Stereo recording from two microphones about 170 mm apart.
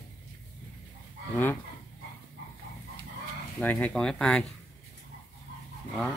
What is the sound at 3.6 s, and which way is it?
Speech, 10° left (ahead or behind).